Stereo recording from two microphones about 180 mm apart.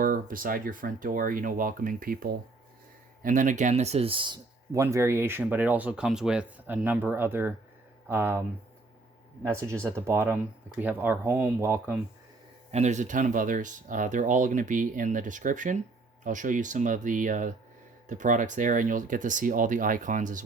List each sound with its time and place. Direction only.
0.0 s speech: 50° right (ahead or behind); by 4.4 s 30° right (ahead or behind)
4.7 s speech: 15° right (ahead or behind)
9.5 s speech: 15° right (ahead or behind)
12.7 s speech: 40° right (ahead or behind)